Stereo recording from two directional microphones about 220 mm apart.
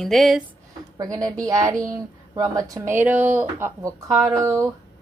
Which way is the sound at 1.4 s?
15° right (ahead or behind).